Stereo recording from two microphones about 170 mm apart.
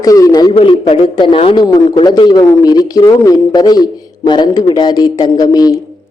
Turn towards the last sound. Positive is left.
turn(degrees=20)  # may be behind; listen again after turning